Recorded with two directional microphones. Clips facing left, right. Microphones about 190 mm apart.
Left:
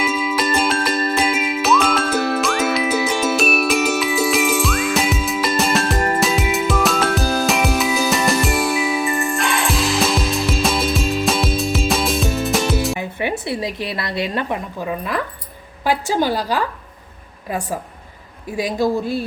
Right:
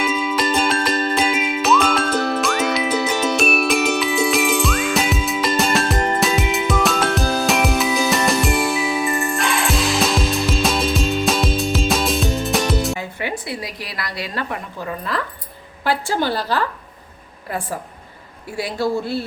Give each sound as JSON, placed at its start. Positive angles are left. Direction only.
{"t": 0.0, "sound": "music", "side_deg": 5}
{"t": 13.0, "sound": "a sound", "side_deg": 20}
{"t": 15.8, "sound": "a woman's voice", "side_deg": 15}
{"t": 18.5, "sound": "a woman's voice", "side_deg": 15}